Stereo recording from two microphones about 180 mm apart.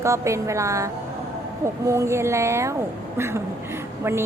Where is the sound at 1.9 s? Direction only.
15° right (ahead or behind).